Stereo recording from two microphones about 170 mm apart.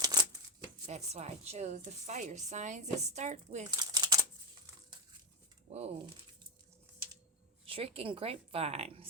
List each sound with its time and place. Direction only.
0.0 s shuffling cards: 25° right (ahead or behind)
0.9 s a woman's voice: 40° right (ahead or behind)
3.7 s crumpling: 25° right (ahead or behind)
5.6 s speech: 40° right (ahead or behind)
7.6 s a woman's voice: 35° right (ahead or behind)